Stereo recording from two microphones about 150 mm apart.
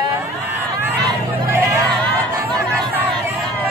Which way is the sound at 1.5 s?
20° right (ahead or behind).